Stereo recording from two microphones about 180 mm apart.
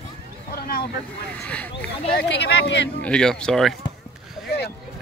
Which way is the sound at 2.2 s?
70° left (ahead or behind).